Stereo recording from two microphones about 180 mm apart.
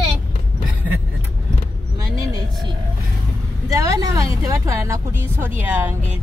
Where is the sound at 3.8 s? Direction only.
20° right (ahead or behind).